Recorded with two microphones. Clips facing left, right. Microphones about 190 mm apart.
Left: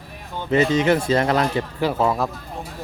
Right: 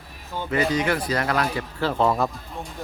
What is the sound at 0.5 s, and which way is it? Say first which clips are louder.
Speech: left 5 dB; 25° left (ahead or behind).